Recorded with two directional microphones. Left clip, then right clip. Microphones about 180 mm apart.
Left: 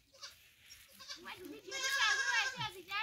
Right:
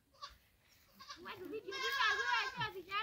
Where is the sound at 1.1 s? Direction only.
35° left (ahead or behind).